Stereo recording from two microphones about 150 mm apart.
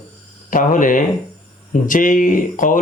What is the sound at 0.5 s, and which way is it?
Speech, 60° left (ahead or behind).